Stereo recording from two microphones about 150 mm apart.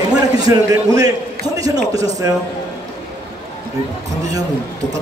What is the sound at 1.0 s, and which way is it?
A man's voice, 25° right (ahead or behind).